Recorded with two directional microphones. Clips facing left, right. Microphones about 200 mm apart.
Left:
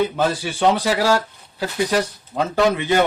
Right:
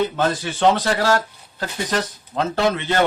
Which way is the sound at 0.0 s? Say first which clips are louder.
Left 1 dB; 10° left (ahead or behind).